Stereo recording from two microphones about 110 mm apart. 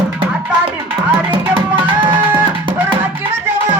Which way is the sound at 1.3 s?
50° right (ahead or behind).